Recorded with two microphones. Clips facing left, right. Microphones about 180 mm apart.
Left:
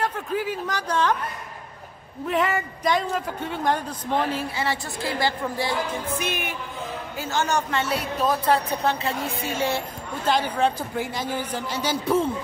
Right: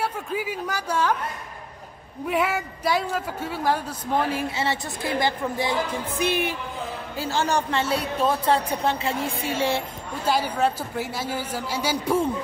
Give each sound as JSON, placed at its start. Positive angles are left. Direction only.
{"t": 0.0, "sound": "speech", "side_deg": -10}
{"t": 2.2, "sound": "a man's voice", "side_deg": -10}
{"t": 4.5, "sound": "a woman's voice", "side_deg": -25}
{"t": 6.2, "sound": "a woman's voice", "side_deg": -35}
{"t": 10.2, "sound": "a man's voice", "side_deg": -10}